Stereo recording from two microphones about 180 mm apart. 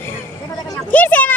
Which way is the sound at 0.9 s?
10° left (ahead or behind).